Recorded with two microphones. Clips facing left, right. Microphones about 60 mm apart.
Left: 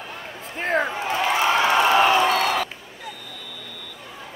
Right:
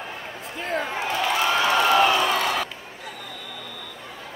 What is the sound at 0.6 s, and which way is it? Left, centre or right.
Speech, left.